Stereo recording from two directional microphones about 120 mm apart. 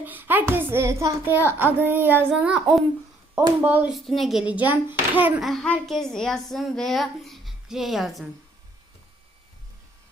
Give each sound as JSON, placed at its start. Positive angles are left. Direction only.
{"t": 0.0, "sound": "a sound", "side_deg": -15}
{"t": 0.5, "sound": "a child's voice", "side_deg": -20}
{"t": 3.9, "sound": "a child's voice", "side_deg": 0}
{"t": 5.4, "sound": "a woman's voice", "side_deg": 0}